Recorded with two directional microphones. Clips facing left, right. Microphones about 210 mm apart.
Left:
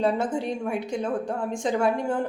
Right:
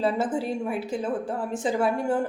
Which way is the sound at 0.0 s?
5° right (ahead or behind).